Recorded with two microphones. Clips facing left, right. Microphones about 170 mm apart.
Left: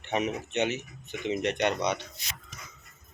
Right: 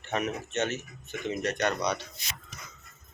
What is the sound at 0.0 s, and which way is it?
Speech, 15° left (ahead or behind).